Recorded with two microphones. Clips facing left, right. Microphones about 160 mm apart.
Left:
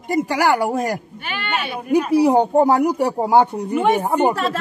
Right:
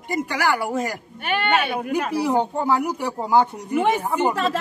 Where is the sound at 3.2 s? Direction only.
60° left (ahead or behind).